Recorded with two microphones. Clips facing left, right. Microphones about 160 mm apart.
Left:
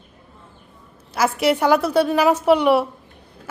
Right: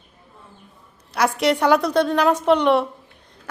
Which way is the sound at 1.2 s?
5° left (ahead or behind).